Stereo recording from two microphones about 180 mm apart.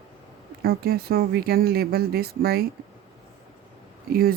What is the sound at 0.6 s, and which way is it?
Speech, 60° right (ahead or behind).